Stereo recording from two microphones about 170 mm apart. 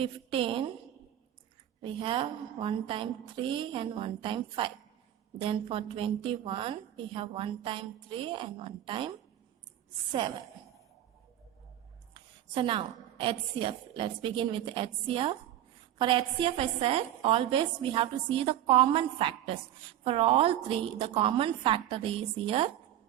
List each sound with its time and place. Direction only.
0.0 s a woman's voice: 30° right (ahead or behind)
1.8 s a woman's voice: 30° right (ahead or behind)
10.1 s a woman's voice: 25° right (ahead or behind)
12.1 s a woman's voice: 30° right (ahead or behind)